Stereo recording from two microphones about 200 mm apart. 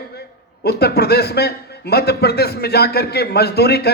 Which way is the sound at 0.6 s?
55° left (ahead or behind).